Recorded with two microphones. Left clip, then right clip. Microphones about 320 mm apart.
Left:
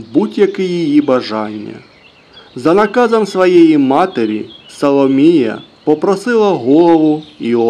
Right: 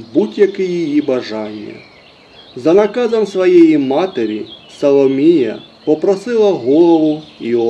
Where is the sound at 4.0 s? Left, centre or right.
Left.